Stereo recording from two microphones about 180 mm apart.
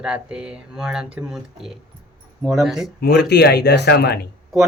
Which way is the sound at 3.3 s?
65° left (ahead or behind).